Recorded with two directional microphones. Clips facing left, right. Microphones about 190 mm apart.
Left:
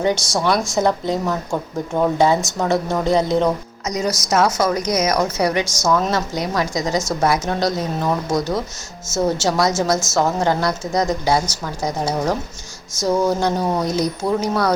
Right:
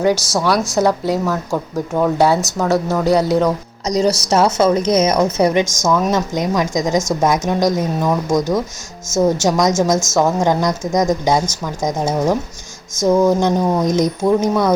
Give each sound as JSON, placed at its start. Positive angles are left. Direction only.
{"t": 0.0, "sound": "a woman's voice", "side_deg": -5}
{"t": 3.8, "sound": "a woman's voice", "side_deg": -30}
{"t": 13.3, "sound": "speech", "side_deg": -20}